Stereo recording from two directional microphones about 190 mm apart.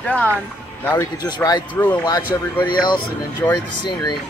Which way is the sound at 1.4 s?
5° left (ahead or behind).